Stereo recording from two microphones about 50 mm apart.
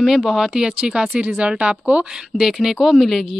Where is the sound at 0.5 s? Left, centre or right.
Centre.